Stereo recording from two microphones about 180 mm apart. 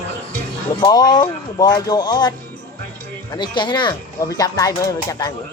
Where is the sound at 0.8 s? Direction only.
25° left (ahead or behind).